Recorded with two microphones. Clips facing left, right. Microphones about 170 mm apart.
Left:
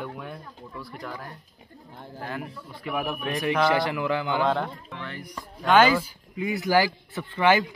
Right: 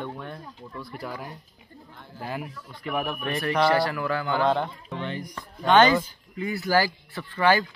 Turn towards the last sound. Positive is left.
turn(degrees=20)  # may be behind; listen again after turning